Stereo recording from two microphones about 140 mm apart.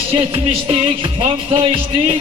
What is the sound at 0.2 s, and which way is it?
Music, 45° right (ahead or behind).